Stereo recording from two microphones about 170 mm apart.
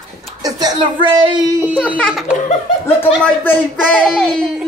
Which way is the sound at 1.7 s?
10° left (ahead or behind).